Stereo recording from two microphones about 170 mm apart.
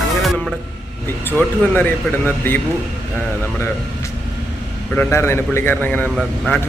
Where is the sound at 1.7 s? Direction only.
10° left (ahead or behind).